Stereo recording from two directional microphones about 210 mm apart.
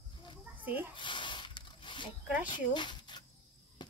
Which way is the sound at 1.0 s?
20° left (ahead or behind).